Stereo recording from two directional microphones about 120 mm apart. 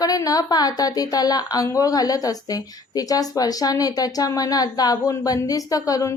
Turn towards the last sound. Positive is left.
turn(degrees=30)  # may be behind; listen again after turning